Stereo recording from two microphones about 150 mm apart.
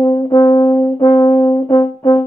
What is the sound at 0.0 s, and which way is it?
Brass instrument, 25° left (ahead or behind).